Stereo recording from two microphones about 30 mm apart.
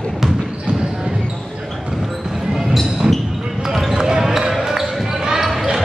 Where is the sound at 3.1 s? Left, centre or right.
Centre.